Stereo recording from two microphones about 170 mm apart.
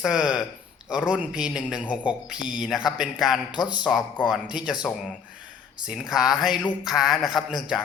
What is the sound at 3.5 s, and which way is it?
Speech, 25° left (ahead or behind).